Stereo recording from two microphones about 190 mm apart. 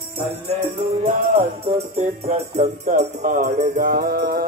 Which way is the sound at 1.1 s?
30° right (ahead or behind).